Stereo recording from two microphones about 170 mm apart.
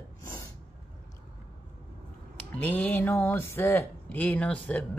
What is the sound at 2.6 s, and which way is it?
Speech, 10° left (ahead or behind).